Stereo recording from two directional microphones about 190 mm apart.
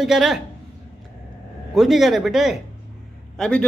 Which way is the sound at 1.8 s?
Centre (ahead or behind).